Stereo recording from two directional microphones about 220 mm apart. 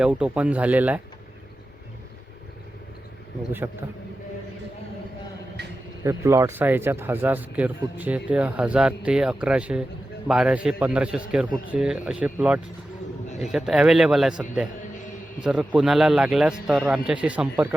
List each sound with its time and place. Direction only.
0.0 s speech: 5° right (ahead or behind)
3.6 s speech: 10° right (ahead or behind)
5.6 s a sound: 50° right (ahead or behind)
6.0 s a man's voice: 15° right (ahead or behind)
14.8 s music: 35° left (ahead or behind)
15.4 s a man's voice: 5° right (ahead or behind)